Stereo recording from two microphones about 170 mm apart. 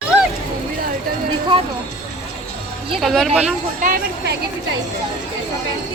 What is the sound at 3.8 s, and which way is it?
Speech, 55° right (ahead or behind).